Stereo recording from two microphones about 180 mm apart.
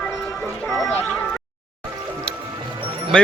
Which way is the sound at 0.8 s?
10° left (ahead or behind).